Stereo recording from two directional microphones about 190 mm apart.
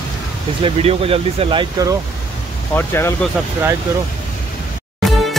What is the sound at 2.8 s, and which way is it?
Speech, 10° left (ahead or behind).